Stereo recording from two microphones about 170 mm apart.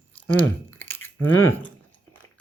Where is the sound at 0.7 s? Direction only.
10° left (ahead or behind).